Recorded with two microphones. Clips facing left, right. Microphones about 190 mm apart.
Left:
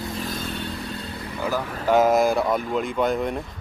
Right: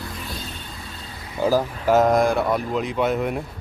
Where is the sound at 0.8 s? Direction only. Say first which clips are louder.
Left 6 dB; 65° left (ahead or behind).